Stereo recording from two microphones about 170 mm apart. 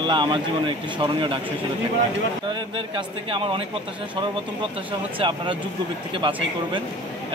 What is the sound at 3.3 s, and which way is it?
Speech, 30° right (ahead or behind).